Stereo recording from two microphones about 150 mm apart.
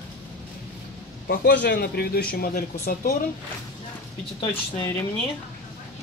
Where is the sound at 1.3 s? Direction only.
90° left.